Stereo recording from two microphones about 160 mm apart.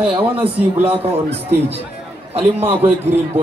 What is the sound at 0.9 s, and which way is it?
Speech, 40° right (ahead or behind).